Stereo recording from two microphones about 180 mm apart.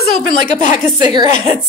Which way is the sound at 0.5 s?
40° left (ahead or behind).